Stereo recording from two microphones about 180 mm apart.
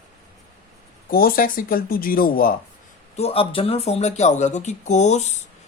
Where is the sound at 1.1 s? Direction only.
55° left (ahead or behind).